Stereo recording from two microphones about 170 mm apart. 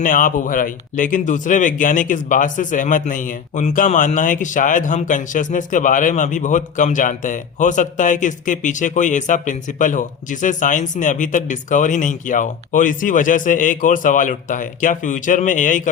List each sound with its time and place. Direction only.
0.0 s speech: 50° left (ahead or behind)